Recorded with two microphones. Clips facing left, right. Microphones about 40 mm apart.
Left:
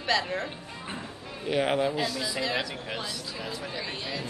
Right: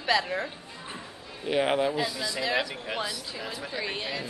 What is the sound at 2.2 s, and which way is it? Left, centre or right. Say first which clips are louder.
Speech: even; centre.